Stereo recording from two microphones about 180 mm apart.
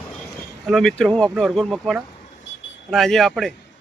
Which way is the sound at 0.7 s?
Centre (ahead or behind).